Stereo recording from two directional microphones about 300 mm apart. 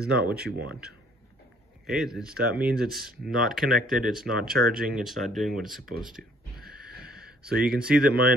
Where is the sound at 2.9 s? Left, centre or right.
Centre.